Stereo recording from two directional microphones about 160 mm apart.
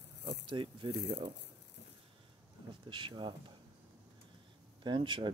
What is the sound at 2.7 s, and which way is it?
Speech, 30° right (ahead or behind).